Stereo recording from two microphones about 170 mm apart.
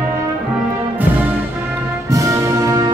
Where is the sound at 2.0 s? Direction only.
20° right (ahead or behind).